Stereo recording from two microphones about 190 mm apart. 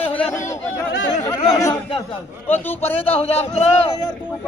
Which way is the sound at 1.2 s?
15° left (ahead or behind).